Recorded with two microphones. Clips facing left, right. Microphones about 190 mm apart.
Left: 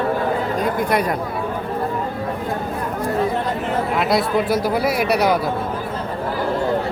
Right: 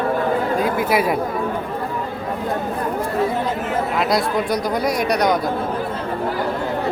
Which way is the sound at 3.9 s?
Centre (ahead or behind).